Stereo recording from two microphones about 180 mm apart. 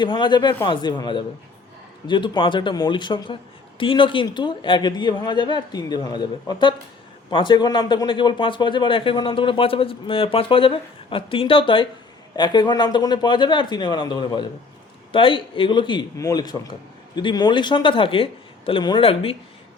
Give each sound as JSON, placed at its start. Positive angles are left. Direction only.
{"t": 0.0, "sound": "a man's voice", "side_deg": 25}